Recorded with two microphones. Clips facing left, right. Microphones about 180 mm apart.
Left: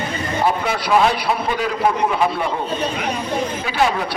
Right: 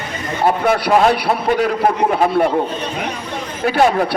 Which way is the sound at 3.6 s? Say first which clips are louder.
Right 8 dB; 55° right (ahead or behind).